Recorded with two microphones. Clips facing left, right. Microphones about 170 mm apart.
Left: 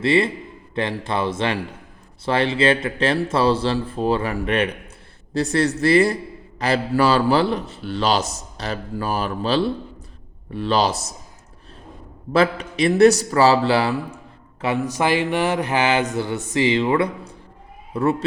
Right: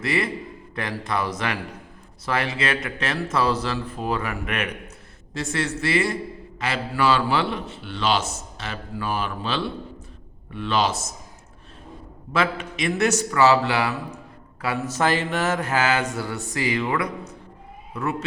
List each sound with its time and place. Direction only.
0.0 s a man's voice: 30° left (ahead or behind)
12.3 s a man's voice: 35° left (ahead or behind)
14.6 s speech: 20° left (ahead or behind)